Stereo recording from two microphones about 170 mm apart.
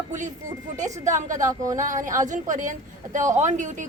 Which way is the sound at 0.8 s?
45° right (ahead or behind).